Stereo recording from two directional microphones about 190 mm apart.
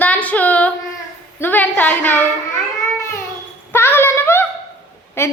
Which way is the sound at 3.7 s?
10° left (ahead or behind).